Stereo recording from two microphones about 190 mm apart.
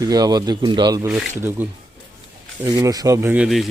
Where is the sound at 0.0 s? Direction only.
20° right (ahead or behind).